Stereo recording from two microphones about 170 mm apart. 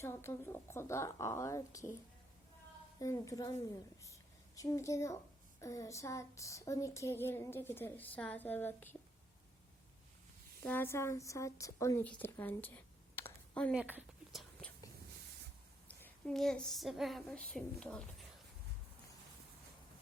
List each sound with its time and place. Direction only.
0.0 s a sound: 15° left (ahead or behind)
3.0 s a woman's voice: 20° left (ahead or behind)
5.5 s a sound: 20° left (ahead or behind)
10.6 s a woman's voice: 10° left (ahead or behind)
13.7 s speech: 10° right (ahead or behind)
16.0 s a woman's voice: 5° left (ahead or behind)